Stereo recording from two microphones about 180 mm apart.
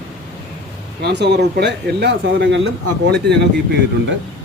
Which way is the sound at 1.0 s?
70° right (ahead or behind).